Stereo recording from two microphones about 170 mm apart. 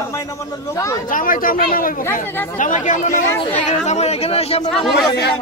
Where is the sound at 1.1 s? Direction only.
55° left (ahead or behind); by 4.7 s 35° left (ahead or behind).